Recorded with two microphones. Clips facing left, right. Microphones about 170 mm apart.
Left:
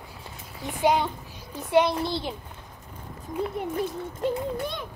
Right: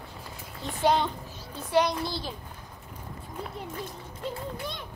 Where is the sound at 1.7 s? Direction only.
25° left (ahead or behind).